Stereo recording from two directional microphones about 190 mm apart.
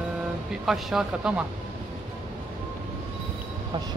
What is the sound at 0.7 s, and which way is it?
Speech, centre (ahead or behind).